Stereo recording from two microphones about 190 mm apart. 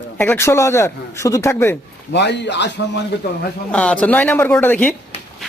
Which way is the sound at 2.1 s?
65° left (ahead or behind).